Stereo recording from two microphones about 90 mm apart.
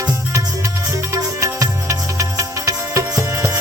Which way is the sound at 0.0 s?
40° right (ahead or behind).